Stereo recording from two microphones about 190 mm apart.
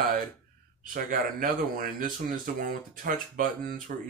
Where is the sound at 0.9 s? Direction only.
45° right (ahead or behind).